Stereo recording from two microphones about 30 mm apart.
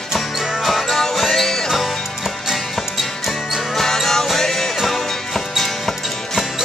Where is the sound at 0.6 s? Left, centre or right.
Centre.